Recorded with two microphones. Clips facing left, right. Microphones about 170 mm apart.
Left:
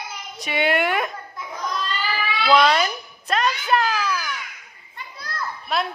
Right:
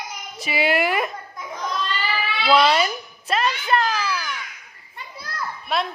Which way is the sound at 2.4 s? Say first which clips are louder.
Even; 5° right (ahead or behind).